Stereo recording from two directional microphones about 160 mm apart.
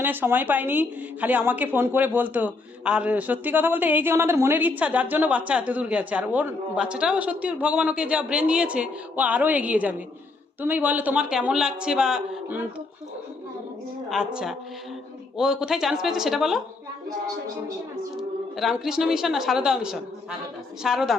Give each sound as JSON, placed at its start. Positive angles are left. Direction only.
{"t": 0.0, "sound": "speech", "side_deg": -10}
{"t": 14.1, "sound": "a woman's voice", "side_deg": -5}
{"t": 18.2, "sound": "a woman's voice", "side_deg": 0}